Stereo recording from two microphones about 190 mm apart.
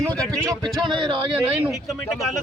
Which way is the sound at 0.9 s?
25° right (ahead or behind).